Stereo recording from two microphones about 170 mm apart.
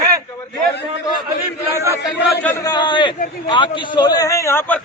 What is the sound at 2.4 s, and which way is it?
A man's voice, 20° left (ahead or behind).